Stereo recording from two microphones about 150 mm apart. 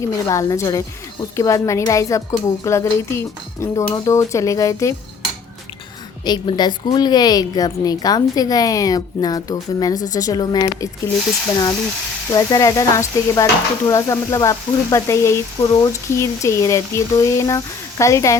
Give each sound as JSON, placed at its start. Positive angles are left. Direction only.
{"t": 0.1, "sound": "speech", "side_deg": 20}
{"t": 6.2, "sound": "speech", "side_deg": 30}
{"t": 12.3, "sound": "speech", "side_deg": 25}